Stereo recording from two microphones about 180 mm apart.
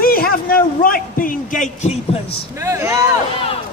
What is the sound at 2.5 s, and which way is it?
Speech, 15° right (ahead or behind).